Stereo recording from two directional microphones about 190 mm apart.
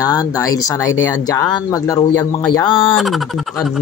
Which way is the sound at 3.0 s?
Centre (ahead or behind).